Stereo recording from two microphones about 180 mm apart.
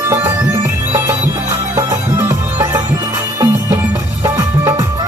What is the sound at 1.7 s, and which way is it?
Music, 15° right (ahead or behind).